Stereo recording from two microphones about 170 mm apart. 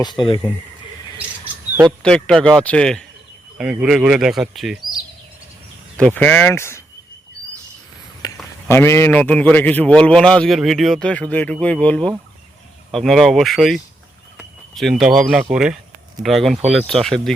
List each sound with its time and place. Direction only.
0.0 s speech: 30° left (ahead or behind)
2.0 s speech: 5° left (ahead or behind)
6.0 s a man's voice: 5° left (ahead or behind)
8.2 s a sound: 25° left (ahead or behind)
8.7 s a man's voice: 15° left (ahead or behind)